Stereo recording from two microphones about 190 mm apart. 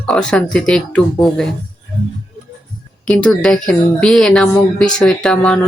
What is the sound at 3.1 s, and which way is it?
Speech, 5° left (ahead or behind).